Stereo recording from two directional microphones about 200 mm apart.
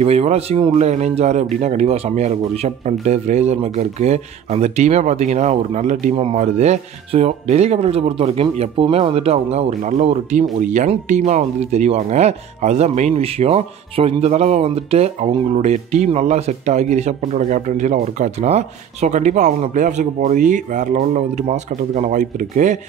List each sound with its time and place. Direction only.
0.0 s speech: 30° right (ahead or behind)